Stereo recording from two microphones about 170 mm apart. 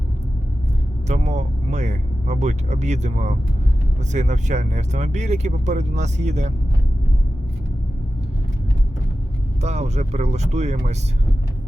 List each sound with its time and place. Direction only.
1.0 s speech: 40° right (ahead or behind)
9.6 s speech: 40° right (ahead or behind)